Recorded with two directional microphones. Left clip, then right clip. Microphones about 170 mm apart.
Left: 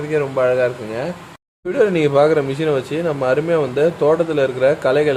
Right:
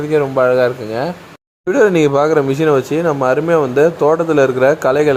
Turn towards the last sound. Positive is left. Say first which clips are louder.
# right 3 dB
turn(degrees=-25)  # may be behind; listen again after turning